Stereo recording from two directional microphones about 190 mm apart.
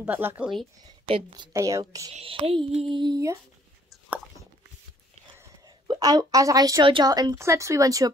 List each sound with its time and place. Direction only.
0.0 s speech: 10° right (ahead or behind)
1.0 s a woman's voice: 25° right (ahead or behind)
2.1 s a woman's voice: 30° right (ahead or behind)
5.7 s a woman's voice: 20° right (ahead or behind)